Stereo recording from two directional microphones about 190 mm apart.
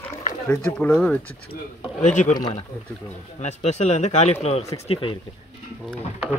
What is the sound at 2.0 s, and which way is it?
Speech, 40° left (ahead or behind).